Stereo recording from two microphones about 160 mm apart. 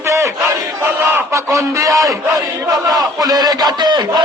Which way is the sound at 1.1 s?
20° right (ahead or behind).